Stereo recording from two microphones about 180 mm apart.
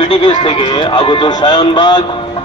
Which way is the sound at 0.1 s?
30° left (ahead or behind).